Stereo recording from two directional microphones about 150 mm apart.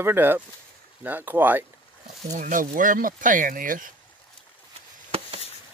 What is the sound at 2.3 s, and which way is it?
Speech, 60° right (ahead or behind).